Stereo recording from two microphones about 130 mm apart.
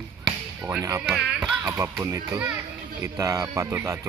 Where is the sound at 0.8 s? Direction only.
25° right (ahead or behind).